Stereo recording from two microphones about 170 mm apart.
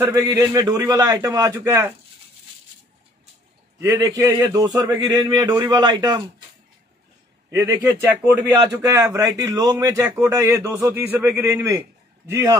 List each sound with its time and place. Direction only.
0.0 s a man's voice: 15° right (ahead or behind)
3.8 s a man's voice: 20° right (ahead or behind)
7.5 s a man's voice: 20° right (ahead or behind)